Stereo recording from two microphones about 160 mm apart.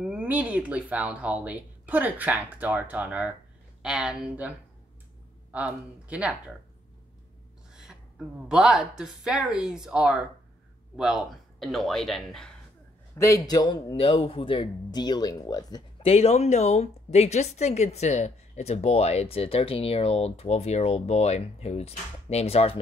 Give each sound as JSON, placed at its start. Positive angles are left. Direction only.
{"t": 0.0, "sound": "speech", "side_deg": -10}
{"t": 5.5, "sound": "speech", "side_deg": -10}
{"t": 7.7, "sound": "a sound", "side_deg": -5}
{"t": 8.5, "sound": "speech", "side_deg": -5}
{"t": 11.6, "sound": "speech", "side_deg": 0}
{"t": 13.1, "sound": "speech", "side_deg": 20}
{"t": 13.9, "sound": "speech", "side_deg": 35}
{"t": 16.0, "sound": "a woman's voice", "side_deg": 40}